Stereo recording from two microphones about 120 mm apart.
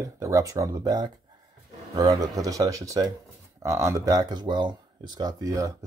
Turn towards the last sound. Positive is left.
turn(degrees=-30)  # may be behind; listen again after turning